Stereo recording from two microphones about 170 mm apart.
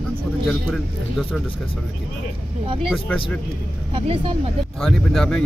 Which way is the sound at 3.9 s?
35° right (ahead or behind).